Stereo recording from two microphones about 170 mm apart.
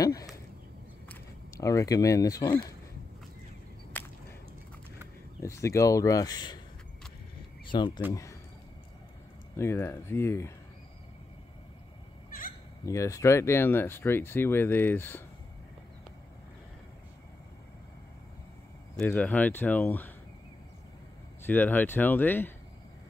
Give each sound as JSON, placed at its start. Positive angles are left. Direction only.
{"t": 0.0, "sound": "a sound", "side_deg": 20}
{"t": 1.0, "sound": "speech", "side_deg": 15}
{"t": 3.9, "sound": "whip", "side_deg": 10}
{"t": 5.4, "sound": "speech", "side_deg": 15}
{"t": 7.6, "sound": "speech", "side_deg": 25}
{"t": 9.6, "sound": "speech", "side_deg": 15}
{"t": 12.8, "sound": "speech", "side_deg": 20}
{"t": 18.9, "sound": "speech", "side_deg": 10}
{"t": 21.5, "sound": "speech", "side_deg": 10}